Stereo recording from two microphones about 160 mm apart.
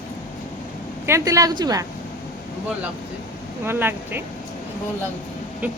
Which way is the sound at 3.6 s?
15° right (ahead or behind).